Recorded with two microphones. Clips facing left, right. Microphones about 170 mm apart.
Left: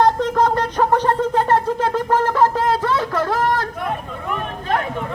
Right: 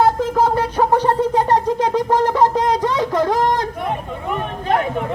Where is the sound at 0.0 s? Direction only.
5° right (ahead or behind).